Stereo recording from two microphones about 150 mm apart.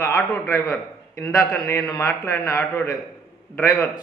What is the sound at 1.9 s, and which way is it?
A man's voice, 20° left (ahead or behind).